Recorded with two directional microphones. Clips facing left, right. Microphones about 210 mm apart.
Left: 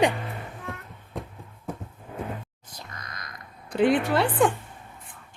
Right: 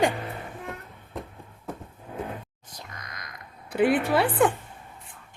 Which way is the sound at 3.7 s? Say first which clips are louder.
Even; 5° right (ahead or behind).